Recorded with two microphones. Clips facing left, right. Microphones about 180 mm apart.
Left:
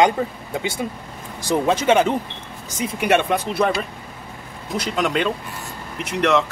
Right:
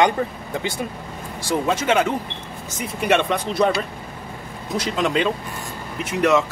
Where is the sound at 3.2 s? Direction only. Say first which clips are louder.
Even; 5° left (ahead or behind).